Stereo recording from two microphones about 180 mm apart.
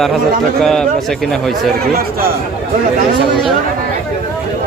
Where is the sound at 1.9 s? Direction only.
55° right (ahead or behind).